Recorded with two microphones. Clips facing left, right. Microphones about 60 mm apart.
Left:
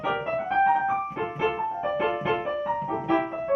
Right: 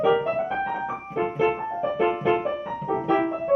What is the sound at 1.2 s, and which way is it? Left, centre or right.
Music, right.